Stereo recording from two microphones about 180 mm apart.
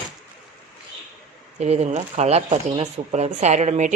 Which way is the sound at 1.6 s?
40° right (ahead or behind).